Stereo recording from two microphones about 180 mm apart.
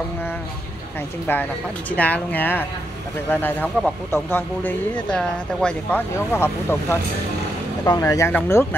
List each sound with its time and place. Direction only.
1.2 s speech: 10° left (ahead or behind)